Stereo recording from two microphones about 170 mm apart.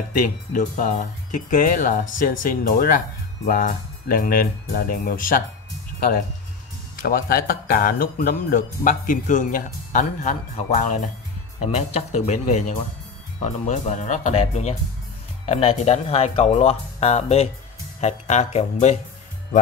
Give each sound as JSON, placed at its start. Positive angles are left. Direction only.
{"t": 0.1, "sound": "speech", "side_deg": 55}
{"t": 12.3, "sound": "speech", "side_deg": 40}